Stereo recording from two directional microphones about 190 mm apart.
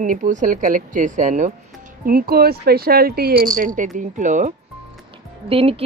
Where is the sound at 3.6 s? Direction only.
45° right (ahead or behind).